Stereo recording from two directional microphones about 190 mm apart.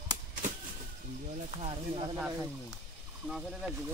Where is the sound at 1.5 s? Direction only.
35° right (ahead or behind).